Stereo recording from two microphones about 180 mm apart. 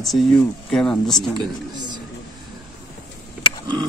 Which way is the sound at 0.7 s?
5° left (ahead or behind).